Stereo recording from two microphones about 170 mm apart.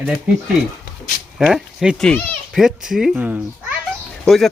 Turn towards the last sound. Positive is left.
turn(degrees=0)  # may be behind; listen again after turning